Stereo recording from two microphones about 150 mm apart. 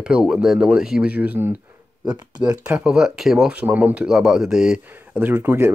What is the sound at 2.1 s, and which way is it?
Speech, 25° right (ahead or behind).